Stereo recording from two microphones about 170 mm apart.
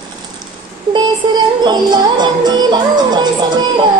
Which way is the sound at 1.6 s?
25° right (ahead or behind).